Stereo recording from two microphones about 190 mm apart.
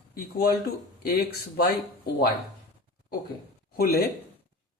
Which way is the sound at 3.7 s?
55° left (ahead or behind).